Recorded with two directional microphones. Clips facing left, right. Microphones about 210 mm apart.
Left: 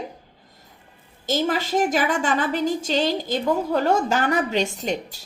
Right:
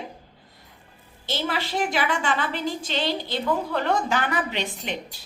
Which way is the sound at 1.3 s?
45° left (ahead or behind).